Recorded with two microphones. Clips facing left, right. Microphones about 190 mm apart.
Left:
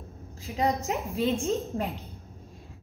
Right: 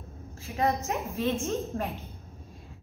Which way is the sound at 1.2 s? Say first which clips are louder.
Left 2 dB; 35° left (ahead or behind).